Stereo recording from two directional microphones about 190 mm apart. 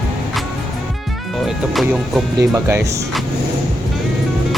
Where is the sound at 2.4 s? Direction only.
15° right (ahead or behind).